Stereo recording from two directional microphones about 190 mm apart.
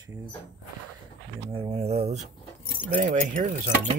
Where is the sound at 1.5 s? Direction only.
30° right (ahead or behind).